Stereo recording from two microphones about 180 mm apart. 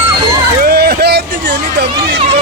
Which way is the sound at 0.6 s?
60° right (ahead or behind).